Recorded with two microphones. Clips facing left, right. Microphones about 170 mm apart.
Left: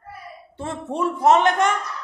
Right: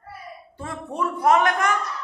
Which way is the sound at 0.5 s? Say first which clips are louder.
Left 4 dB; 25° left (ahead or behind).